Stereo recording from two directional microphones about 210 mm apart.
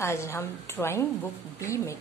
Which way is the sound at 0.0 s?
15° left (ahead or behind).